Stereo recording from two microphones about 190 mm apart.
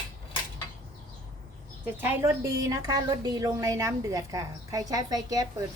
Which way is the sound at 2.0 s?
15° right (ahead or behind).